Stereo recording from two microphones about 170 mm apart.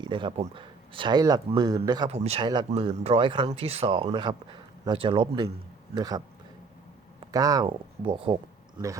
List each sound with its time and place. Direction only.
0.0 s speech: 30° right (ahead or behind)
2.0 s speech: 40° right (ahead or behind); by 6.2 s 25° right (ahead or behind)
7.3 s speech: 20° right (ahead or behind)